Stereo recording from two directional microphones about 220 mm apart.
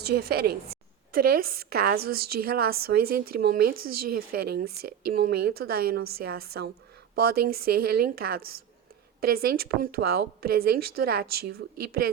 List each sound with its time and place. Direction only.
0.1 s a woman's voice: 45° right (ahead or behind)